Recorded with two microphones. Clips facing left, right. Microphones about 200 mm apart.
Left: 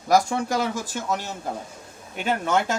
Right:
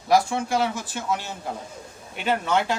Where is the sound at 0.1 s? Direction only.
40° left (ahead or behind).